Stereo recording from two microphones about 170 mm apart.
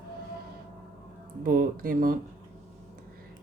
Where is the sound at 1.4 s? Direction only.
55° right (ahead or behind).